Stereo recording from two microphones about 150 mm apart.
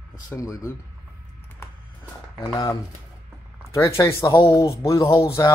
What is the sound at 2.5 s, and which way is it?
Speech, 25° left (ahead or behind).